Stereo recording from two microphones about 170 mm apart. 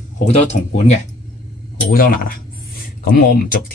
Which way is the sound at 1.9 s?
60° left (ahead or behind).